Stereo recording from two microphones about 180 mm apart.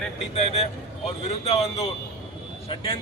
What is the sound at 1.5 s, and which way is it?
Speech, 35° left (ahead or behind).